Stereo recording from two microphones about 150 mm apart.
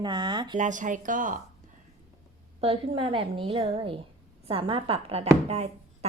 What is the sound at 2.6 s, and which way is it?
A woman's voice, 40° right (ahead or behind).